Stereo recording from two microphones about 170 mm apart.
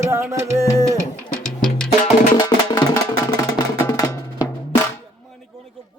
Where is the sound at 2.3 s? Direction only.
25° left (ahead or behind).